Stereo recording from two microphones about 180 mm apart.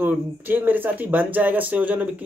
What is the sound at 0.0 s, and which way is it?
Speech, 10° right (ahead or behind).